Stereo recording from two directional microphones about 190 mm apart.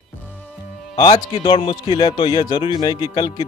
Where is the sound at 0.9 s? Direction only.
25° left (ahead or behind).